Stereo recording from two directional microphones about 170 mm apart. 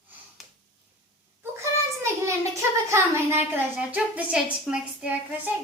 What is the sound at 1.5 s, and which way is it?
Child singing, 15° right (ahead or behind).